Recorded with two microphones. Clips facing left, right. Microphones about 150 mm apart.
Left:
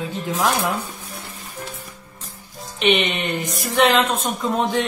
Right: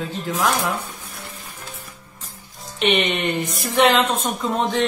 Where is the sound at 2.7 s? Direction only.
Centre (ahead or behind).